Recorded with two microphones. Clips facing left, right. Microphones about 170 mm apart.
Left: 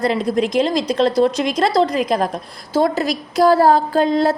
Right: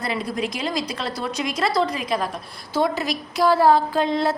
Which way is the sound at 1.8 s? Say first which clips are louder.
Left 6 dB; 45° left (ahead or behind).